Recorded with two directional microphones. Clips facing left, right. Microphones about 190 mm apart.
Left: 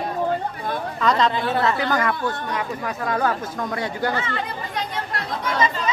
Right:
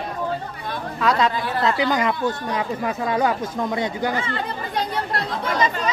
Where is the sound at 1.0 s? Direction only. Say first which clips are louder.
Even; 5° right (ahead or behind).